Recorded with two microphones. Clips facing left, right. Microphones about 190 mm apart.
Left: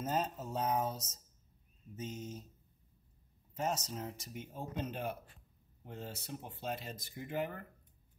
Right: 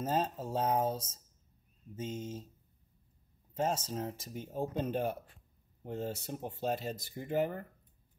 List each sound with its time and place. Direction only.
0.0 s speech: 30° right (ahead or behind)
2.1 s speech: 25° right (ahead or behind)
3.6 s speech: 30° right (ahead or behind)